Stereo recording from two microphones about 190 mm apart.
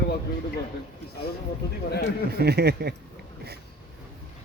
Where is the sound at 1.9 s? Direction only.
60° left (ahead or behind).